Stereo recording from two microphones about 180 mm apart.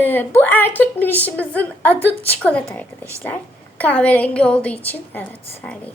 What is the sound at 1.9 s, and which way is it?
Speech, 30° left (ahead or behind).